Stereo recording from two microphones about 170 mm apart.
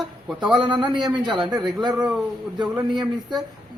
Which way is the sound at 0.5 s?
25° right (ahead or behind).